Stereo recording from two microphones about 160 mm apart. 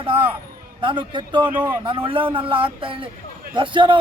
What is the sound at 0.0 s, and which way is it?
A man's voice, 35° right (ahead or behind).